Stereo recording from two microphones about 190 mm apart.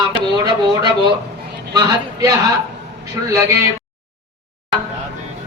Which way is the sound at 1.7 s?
15° right (ahead or behind).